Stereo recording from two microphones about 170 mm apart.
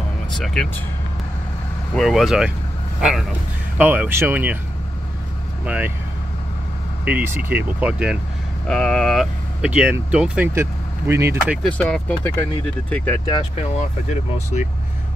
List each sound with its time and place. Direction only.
2.0 s speech: centre (ahead or behind)
5.7 s speech: 10° right (ahead or behind)
7.1 s speech: 10° right (ahead or behind)
11.8 s speech: 10° left (ahead or behind)
13.6 s speech: 40° left (ahead or behind)